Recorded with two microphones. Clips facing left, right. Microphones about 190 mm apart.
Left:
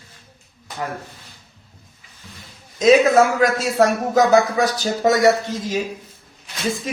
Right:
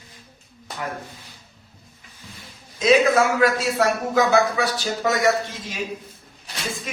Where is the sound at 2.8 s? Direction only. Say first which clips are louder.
Left 4 dB; 45° left (ahead or behind).